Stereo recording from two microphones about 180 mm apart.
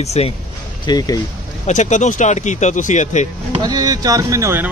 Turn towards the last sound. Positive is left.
turn(degrees=-15)  # may be behind; listen again after turning